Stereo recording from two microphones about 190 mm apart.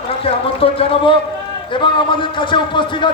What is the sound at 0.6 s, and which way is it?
A man's voice, 30° left (ahead or behind).